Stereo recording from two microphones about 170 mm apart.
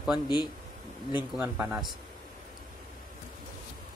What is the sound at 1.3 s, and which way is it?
Speech, 10° right (ahead or behind).